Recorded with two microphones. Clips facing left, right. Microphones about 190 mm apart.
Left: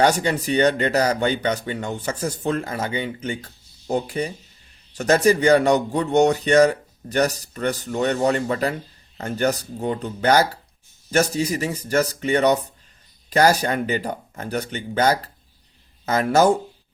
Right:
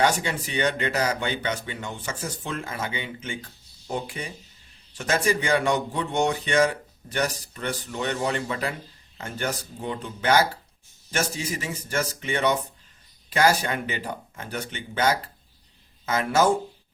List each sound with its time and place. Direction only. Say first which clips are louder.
0.0 s speech: left 5 dB; 40° left (ahead or behind)